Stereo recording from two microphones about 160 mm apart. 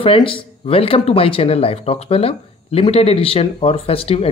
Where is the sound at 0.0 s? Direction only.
35° left (ahead or behind).